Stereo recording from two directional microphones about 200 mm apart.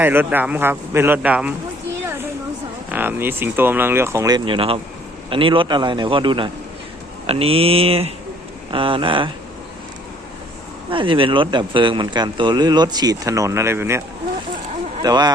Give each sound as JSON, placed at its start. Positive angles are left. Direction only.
{"t": 0.0, "sound": "speech", "side_deg": -10}
{"t": 2.9, "sound": "speech", "side_deg": -10}
{"t": 10.9, "sound": "speech", "side_deg": -25}
{"t": 15.0, "sound": "speech", "side_deg": -20}